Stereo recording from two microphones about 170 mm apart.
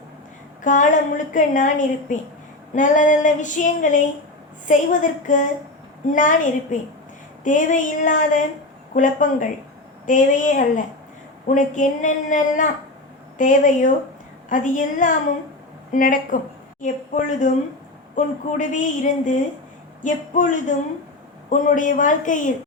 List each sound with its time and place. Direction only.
0.6 s a woman's voice: 50° left (ahead or behind)